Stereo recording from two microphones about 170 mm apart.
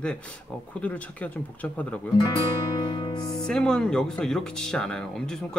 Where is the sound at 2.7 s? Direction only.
25° left (ahead or behind).